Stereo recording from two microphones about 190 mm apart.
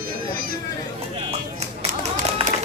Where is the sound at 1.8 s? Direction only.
45° right (ahead or behind).